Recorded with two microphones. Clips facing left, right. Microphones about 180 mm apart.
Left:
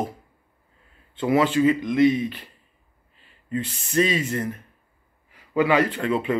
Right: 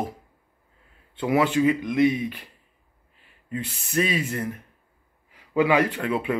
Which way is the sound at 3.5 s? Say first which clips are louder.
Left 3 dB; 10° right (ahead or behind).